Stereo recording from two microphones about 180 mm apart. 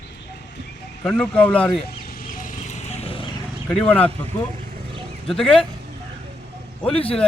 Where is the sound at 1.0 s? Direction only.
5° left (ahead or behind).